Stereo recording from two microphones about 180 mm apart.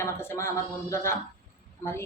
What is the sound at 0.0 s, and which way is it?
Speech, 15° left (ahead or behind).